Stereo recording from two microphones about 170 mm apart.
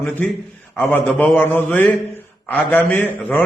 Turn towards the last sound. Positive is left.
turn(degrees=10)  # may be behind; listen again after turning